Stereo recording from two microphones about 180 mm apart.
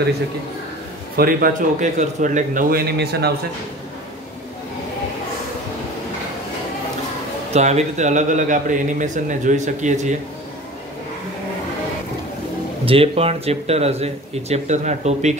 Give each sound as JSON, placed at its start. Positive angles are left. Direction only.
{"t": 1.1, "sound": "a man's voice", "side_deg": -55}
{"t": 3.0, "sound": "a man's voice", "side_deg": -65}
{"t": 7.5, "sound": "a man's voice", "side_deg": -40}
{"t": 12.8, "sound": "speech", "side_deg": -30}